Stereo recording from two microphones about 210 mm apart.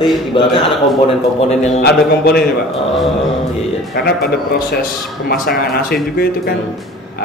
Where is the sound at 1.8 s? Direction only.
50° left (ahead or behind).